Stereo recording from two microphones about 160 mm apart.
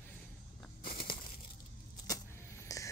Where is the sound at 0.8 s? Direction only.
65° left (ahead or behind).